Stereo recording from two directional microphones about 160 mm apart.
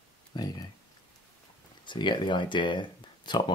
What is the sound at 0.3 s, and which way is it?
Speech, 25° left (ahead or behind).